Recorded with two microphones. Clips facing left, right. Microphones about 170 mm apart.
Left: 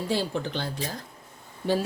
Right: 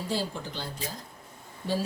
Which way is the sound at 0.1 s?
70° left (ahead or behind).